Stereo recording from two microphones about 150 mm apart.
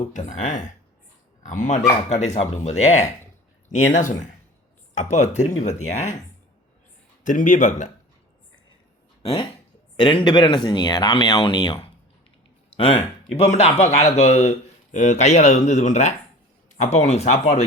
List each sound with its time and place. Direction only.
0.1 s speech: 55° left (ahead or behind)
7.3 s speech: 55° left (ahead or behind)
9.2 s speech: 40° left (ahead or behind)